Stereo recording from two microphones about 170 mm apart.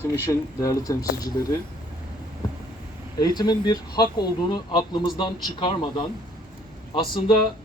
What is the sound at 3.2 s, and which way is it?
A man's voice, 25° left (ahead or behind).